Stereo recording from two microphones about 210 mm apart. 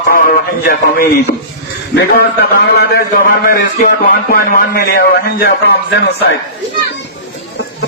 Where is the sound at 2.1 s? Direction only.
50° left (ahead or behind).